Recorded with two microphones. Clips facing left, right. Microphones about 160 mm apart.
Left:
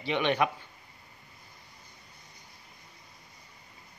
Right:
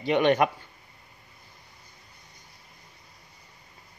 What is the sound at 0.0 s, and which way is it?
Speech, 45° right (ahead or behind).